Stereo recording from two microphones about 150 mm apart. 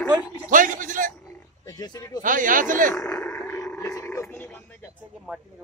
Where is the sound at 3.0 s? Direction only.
5° left (ahead or behind).